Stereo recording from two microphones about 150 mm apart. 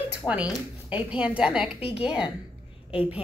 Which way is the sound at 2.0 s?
5° right (ahead or behind).